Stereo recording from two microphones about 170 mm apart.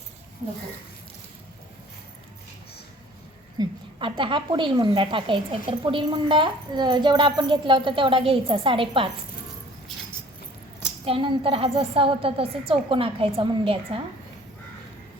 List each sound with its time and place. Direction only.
3.6 s a woman's voice: 25° right (ahead or behind)
11.0 s a woman's voice: 30° right (ahead or behind)